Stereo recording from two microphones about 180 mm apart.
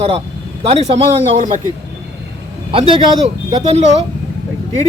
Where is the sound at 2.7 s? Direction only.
30° right (ahead or behind).